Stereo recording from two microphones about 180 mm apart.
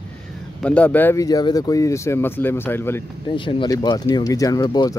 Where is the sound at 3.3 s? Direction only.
25° left (ahead or behind).